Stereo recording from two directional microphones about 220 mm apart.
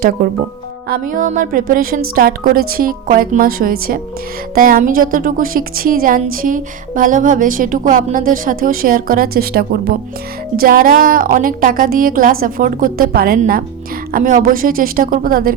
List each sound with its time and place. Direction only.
0.9 s a woman's voice: 35° right (ahead or behind)